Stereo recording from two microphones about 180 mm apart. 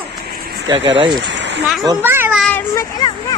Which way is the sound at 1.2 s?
75° right (ahead or behind).